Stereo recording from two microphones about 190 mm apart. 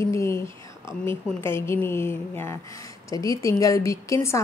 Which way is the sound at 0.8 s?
10° left (ahead or behind).